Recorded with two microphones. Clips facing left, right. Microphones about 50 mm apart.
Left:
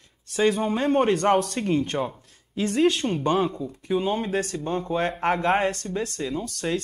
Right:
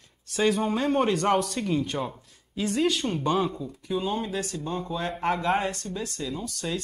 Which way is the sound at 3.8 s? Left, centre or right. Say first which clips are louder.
Left 4 dB; left.